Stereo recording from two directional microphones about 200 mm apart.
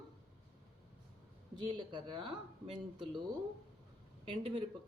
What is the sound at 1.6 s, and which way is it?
A woman's voice, 25° right (ahead or behind).